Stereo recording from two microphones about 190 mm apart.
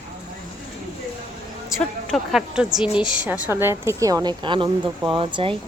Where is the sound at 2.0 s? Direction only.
Centre (ahead or behind); by 5.5 s 25° right (ahead or behind).